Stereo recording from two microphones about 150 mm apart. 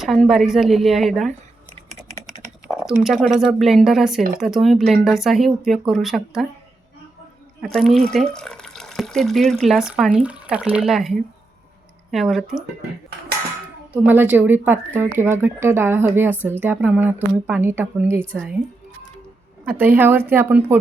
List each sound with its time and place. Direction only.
0.0 s speech: centre (ahead or behind)
2.6 s speech: centre (ahead or behind)
7.6 s speech: centre (ahead or behind)
13.9 s speech: 15° right (ahead or behind)
19.6 s speech: 15° right (ahead or behind)